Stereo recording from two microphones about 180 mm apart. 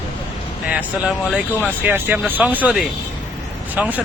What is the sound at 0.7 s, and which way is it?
Speech, 5° right (ahead or behind).